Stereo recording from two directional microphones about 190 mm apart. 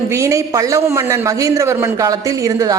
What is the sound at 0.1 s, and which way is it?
A man's voice, 15° right (ahead or behind).